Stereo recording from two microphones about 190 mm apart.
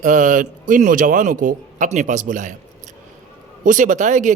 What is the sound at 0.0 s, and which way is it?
Speech, 45° right (ahead or behind).